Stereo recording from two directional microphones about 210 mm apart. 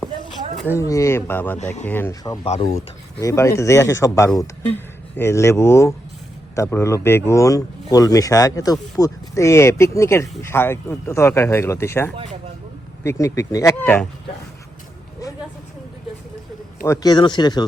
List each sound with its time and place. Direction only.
0.5 s speech: 5° left (ahead or behind)
0.8 s speech: 15° left (ahead or behind)
2.5 s speech: 30° left (ahead or behind)
3.2 s speech: 15° left (ahead or behind)
16.8 s speech: 15° left (ahead or behind)